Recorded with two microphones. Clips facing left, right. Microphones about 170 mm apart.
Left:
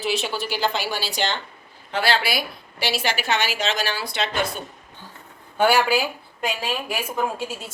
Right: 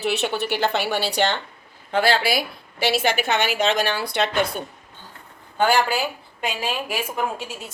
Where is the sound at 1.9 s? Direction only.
50° right (ahead or behind).